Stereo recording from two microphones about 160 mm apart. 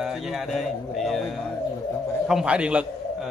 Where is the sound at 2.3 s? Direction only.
5° right (ahead or behind).